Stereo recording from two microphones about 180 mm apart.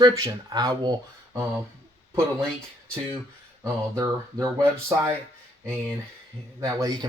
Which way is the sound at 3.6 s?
20° right (ahead or behind).